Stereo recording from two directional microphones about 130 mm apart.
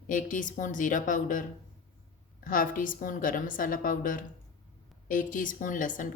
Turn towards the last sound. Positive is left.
turn(degrees=90)